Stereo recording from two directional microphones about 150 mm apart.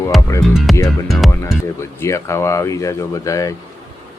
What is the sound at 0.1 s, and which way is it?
Music, centre (ahead or behind).